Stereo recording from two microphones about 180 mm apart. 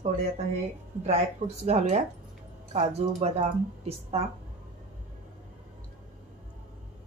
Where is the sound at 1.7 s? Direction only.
40° right (ahead or behind).